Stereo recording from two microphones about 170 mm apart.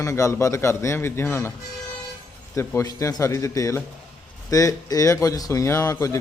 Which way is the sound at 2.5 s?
20° left (ahead or behind).